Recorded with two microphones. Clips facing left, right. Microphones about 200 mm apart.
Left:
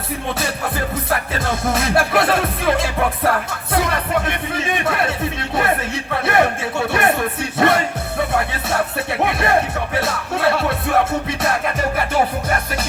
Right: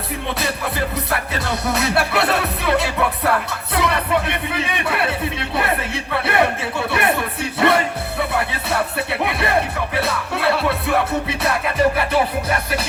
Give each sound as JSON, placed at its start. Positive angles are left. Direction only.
{"t": 1.5, "sound": "music", "side_deg": 45}
{"t": 8.3, "sound": "music", "side_deg": 45}